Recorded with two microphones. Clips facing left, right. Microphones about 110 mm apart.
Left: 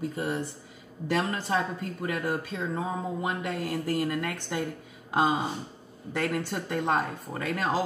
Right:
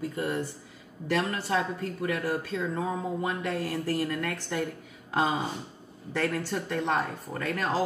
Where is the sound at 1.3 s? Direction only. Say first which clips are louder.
Even; 25° left (ahead or behind).